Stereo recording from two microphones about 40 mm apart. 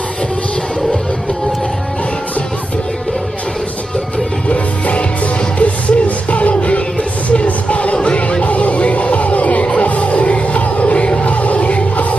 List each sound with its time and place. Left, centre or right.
4.5 s music: left